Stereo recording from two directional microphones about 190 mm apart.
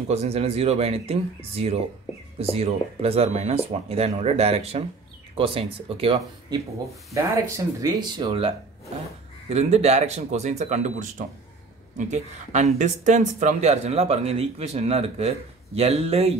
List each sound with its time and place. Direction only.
0.1 s speech: 35° right (ahead or behind)